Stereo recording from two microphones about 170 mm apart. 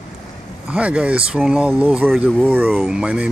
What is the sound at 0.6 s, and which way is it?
Speech, 5° right (ahead or behind).